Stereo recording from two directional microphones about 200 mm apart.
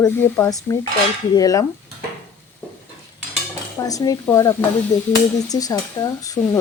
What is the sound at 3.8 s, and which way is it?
Speech, 15° left (ahead or behind).